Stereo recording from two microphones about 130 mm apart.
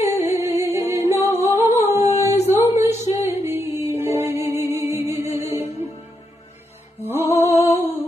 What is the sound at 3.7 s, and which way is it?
Music, 55° left (ahead or behind).